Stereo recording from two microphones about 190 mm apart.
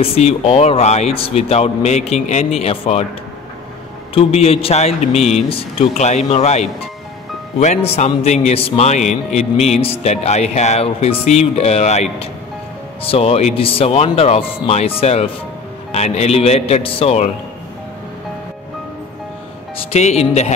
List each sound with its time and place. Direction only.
0.0 s speech: 30° left (ahead or behind)
4.1 s speech: 30° left (ahead or behind)
19.8 s speech: 35° left (ahead or behind)